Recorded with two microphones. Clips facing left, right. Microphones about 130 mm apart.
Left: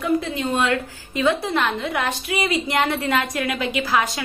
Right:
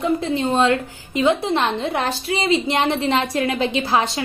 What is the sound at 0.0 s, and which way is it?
A woman's voice, 30° right (ahead or behind).